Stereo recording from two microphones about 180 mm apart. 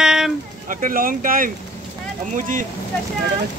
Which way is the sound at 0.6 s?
50° right (ahead or behind).